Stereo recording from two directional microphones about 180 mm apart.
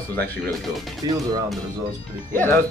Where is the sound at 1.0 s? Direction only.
20° right (ahead or behind).